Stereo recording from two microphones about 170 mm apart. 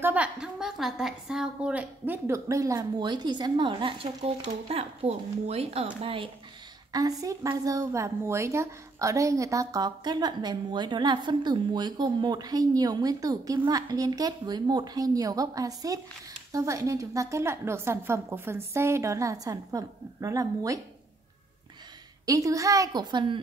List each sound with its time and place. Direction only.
0.0 s a woman's voice: 10° right (ahead or behind); by 6.2 s 30° right (ahead or behind)
6.9 s a woman's voice: 20° right (ahead or behind)
22.2 s a woman's voice: 20° right (ahead or behind)